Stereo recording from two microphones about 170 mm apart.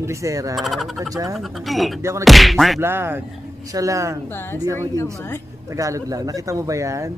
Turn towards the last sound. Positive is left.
turn(degrees=-20)  # may be behind; listen again after turning